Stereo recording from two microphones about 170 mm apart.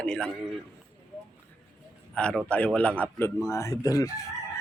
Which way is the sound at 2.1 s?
5° left (ahead or behind).